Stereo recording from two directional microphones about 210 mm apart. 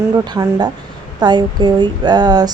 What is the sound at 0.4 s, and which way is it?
Speech, 15° right (ahead or behind).